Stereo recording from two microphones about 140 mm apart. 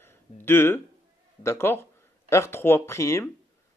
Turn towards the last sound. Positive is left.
turn(degrees=20)  # may be behind; listen again after turning